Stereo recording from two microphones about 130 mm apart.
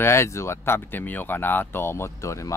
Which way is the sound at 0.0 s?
20° left (ahead or behind).